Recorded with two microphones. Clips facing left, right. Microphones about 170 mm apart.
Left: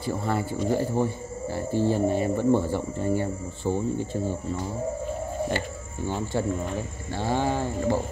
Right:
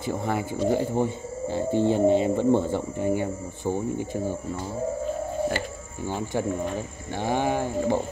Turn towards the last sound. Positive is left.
turn(degrees=-15)  # may be behind; listen again after turning